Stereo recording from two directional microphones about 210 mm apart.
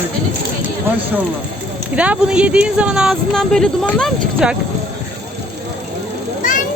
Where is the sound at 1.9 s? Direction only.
5° right (ahead or behind).